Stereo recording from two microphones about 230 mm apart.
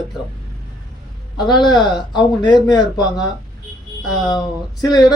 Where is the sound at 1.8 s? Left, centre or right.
Centre.